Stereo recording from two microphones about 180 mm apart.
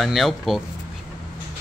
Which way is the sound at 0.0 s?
Centre (ahead or behind).